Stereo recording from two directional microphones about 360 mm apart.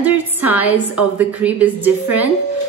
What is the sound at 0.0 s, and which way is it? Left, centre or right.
A woman's voice, centre.